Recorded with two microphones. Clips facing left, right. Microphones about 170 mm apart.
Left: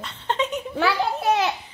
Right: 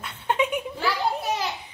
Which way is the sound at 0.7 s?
70° left (ahead or behind).